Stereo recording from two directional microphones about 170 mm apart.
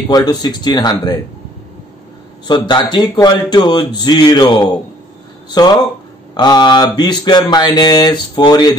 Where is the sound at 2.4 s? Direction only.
25° left (ahead or behind).